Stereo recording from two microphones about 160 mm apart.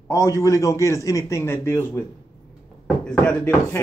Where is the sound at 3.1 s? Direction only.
10° left (ahead or behind).